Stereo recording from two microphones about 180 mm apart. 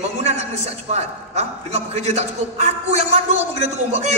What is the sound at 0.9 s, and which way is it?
A man's voice, 40° right (ahead or behind).